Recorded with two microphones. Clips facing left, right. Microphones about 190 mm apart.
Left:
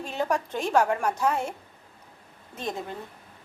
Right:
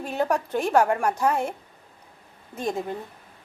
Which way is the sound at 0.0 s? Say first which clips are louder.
Right 3 dB; 10° right (ahead or behind).